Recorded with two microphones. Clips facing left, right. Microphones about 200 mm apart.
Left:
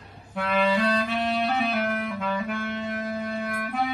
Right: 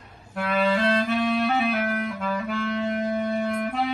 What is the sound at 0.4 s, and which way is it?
Clarinet, centre (ahead or behind).